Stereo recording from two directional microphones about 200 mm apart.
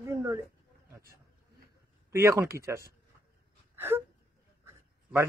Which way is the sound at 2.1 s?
15° right (ahead or behind).